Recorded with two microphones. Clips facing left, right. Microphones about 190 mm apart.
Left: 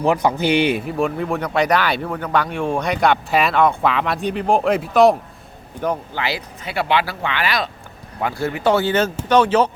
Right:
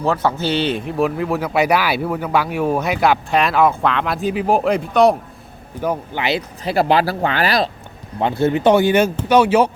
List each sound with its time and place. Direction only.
0.0 s speech: 15° left (ahead or behind); by 5.1 s centre (ahead or behind)
6.1 s speech: 20° right (ahead or behind)
6.7 s speech: 40° right (ahead or behind)
8.2 s speech: 25° right (ahead or behind)